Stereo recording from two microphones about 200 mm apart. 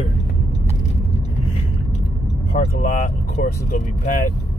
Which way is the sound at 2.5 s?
40° left (ahead or behind).